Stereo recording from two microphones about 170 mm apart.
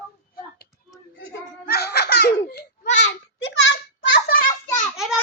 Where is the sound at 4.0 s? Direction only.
90° left; by 4.8 s 55° left (ahead or behind).